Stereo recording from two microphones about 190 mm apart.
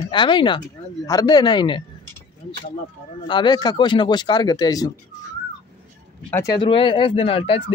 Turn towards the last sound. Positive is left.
turn(degrees=30)  # may be behind; listen again after turning